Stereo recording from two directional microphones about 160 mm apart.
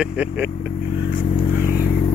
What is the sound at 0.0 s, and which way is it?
Speech, 10° right (ahead or behind).